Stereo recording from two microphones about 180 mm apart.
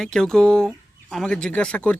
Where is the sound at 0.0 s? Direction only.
5° left (ahead or behind).